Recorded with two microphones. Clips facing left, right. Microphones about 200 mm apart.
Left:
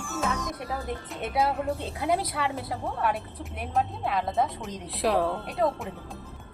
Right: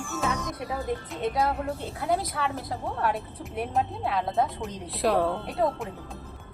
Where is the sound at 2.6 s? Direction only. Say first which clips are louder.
Even; centre (ahead or behind).